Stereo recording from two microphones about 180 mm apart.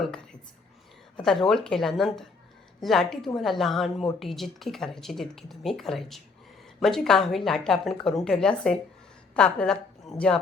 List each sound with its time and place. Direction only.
1.1 s a woman's voice: centre (ahead or behind)